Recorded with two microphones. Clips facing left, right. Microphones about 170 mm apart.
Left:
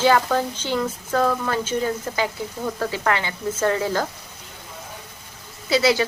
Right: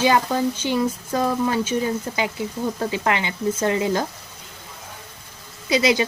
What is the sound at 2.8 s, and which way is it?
Speech, 20° right (ahead or behind).